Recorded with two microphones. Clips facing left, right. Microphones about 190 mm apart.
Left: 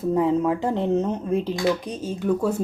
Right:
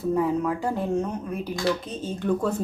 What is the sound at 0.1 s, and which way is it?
Speech, 20° left (ahead or behind).